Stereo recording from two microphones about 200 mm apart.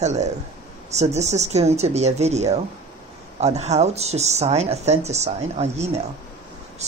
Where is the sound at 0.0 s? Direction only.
35° right (ahead or behind).